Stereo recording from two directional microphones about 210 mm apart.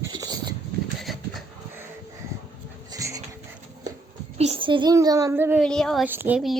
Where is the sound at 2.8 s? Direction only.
15° right (ahead or behind).